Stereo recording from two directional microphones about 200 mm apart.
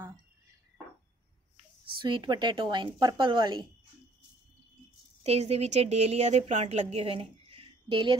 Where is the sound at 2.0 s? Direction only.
25° right (ahead or behind).